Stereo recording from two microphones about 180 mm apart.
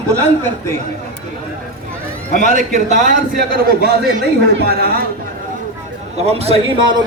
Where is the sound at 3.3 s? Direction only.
60° right (ahead or behind).